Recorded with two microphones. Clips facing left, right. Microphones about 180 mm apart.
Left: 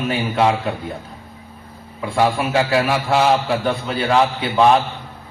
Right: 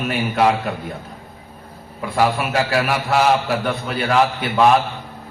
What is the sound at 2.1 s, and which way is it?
A man's voice, 25° left (ahead or behind).